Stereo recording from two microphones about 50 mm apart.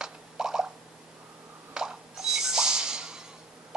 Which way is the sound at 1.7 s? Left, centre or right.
Centre.